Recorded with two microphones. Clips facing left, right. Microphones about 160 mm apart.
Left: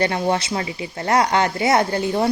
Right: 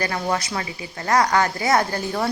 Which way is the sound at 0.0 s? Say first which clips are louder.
Left 4 dB; 25° left (ahead or behind).